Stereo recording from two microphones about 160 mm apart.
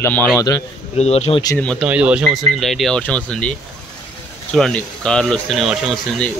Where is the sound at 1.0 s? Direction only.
40° left (ahead or behind).